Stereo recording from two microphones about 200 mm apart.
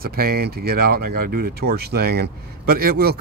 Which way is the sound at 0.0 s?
50° right (ahead or behind).